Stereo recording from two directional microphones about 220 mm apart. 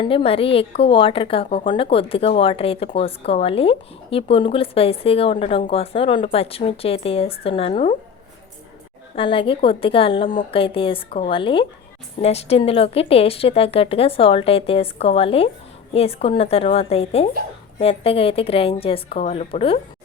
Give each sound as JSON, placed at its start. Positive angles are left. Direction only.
{"t": 0.0, "sound": "a woman's voice", "side_deg": 25}
{"t": 9.1, "sound": "a woman's voice", "side_deg": 25}